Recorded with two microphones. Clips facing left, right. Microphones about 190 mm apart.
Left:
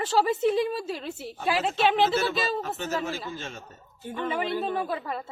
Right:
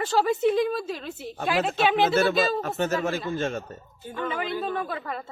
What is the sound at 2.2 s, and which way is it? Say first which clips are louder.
Speech: right 5 dB; 55° right (ahead or behind).